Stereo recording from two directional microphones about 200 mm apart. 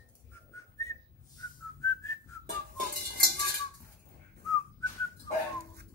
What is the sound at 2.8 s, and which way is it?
Cowbell, 50° right (ahead or behind).